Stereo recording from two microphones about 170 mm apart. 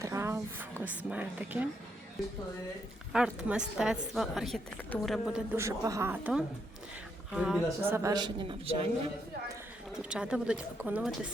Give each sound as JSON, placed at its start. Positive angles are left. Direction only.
{"t": 0.0, "sound": "a woman's voice", "side_deg": -15}
{"t": 3.1, "sound": "a woman's voice", "side_deg": -5}
{"t": 5.5, "sound": "a woman's voice", "side_deg": -20}
{"t": 7.9, "sound": "a man's voice", "side_deg": -20}
{"t": 9.9, "sound": "a woman's voice", "side_deg": -5}